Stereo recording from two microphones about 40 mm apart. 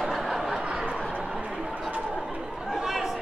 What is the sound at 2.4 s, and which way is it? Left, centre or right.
Chatter, centre.